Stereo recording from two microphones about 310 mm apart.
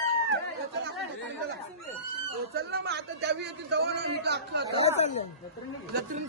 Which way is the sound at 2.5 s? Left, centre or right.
Right.